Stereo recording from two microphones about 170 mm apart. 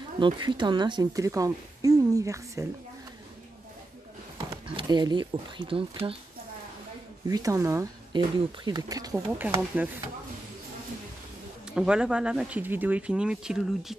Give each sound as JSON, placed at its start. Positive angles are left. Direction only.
{"t": 0.2, "sound": "speech", "side_deg": -30}
{"t": 4.7, "sound": "speech", "side_deg": -25}
{"t": 7.2, "sound": "speech", "side_deg": -20}
{"t": 9.1, "sound": "speech", "side_deg": -10}
{"t": 11.7, "sound": "speech", "side_deg": -5}